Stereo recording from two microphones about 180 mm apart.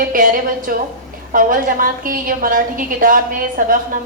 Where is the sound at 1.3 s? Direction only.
50° right (ahead or behind).